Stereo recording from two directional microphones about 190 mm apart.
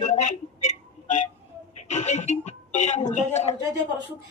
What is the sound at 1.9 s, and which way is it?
Music, 35° left (ahead or behind).